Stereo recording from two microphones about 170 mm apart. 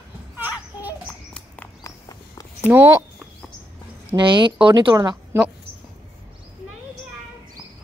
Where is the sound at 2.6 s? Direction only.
15° right (ahead or behind).